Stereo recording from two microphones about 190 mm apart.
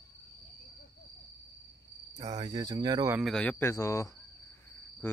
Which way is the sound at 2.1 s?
20° right (ahead or behind).